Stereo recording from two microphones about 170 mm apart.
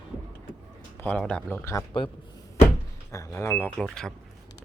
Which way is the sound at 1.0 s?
5° left (ahead or behind).